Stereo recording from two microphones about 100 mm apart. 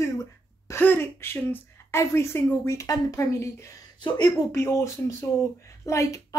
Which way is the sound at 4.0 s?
45° left (ahead or behind).